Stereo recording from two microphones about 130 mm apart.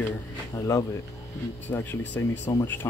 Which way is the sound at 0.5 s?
25° left (ahead or behind).